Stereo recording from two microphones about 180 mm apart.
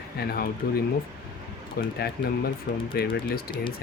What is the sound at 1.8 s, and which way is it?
Speech, 60° left (ahead or behind).